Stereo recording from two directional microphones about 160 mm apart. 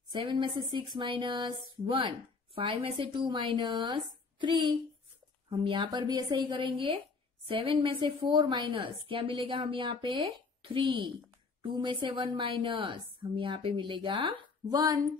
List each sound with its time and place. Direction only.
0.1 s speech: 30° right (ahead or behind)